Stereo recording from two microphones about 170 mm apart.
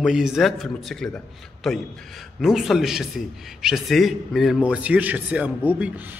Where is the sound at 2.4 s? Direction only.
Centre (ahead or behind).